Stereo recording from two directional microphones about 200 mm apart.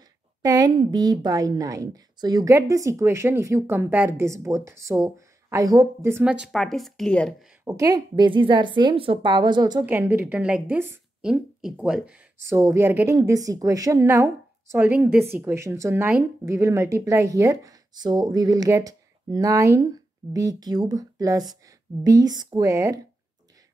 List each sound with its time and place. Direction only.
0.4 s speech: 20° right (ahead or behind); by 7.3 s 5° left (ahead or behind)
7.6 s a woman's voice: 15° right (ahead or behind)